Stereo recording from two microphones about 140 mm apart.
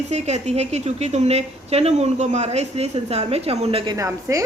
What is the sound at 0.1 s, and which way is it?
A woman's voice, 55° right (ahead or behind).